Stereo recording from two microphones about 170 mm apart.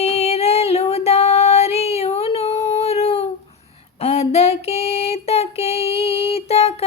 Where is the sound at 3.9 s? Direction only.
40° left (ahead or behind).